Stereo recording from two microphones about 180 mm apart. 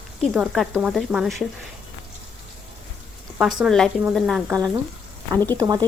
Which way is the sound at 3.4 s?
Centre (ahead or behind).